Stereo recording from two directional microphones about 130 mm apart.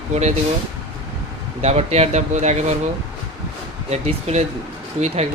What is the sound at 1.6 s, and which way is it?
Speech, 55° right (ahead or behind).